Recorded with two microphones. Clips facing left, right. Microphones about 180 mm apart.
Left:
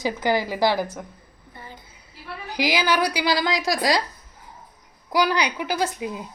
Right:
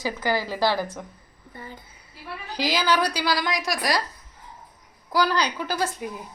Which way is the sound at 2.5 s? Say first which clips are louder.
Left 1 dB; 15° left (ahead or behind).